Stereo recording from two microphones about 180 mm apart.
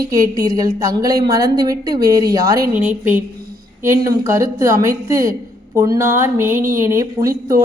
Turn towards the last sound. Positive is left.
turn(degrees=-15)  # may be behind; listen again after turning